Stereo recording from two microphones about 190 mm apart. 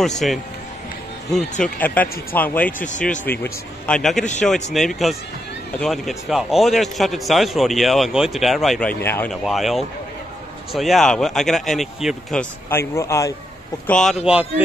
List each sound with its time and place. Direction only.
0.2 s a man's voice: centre (ahead or behind)
2.8 s speech: 40° left (ahead or behind)
3.3 s a man's voice: 10° left (ahead or behind)
9.3 s a man's voice: centre (ahead or behind)
12.6 s speech: 15° left (ahead or behind)
13.8 s a man's voice: 5° left (ahead or behind)